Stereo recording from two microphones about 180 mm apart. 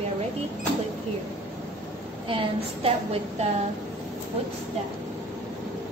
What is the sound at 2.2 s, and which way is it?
A woman's voice, 30° right (ahead or behind).